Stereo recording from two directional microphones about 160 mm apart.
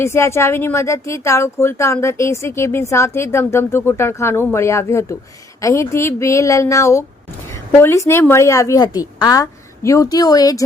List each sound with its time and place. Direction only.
0.0 s a woman's voice: 15° left (ahead or behind)